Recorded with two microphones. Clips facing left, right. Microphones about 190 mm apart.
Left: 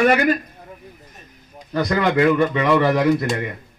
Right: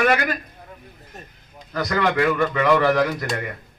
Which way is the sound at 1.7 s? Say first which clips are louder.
Left 3 dB; 20° left (ahead or behind).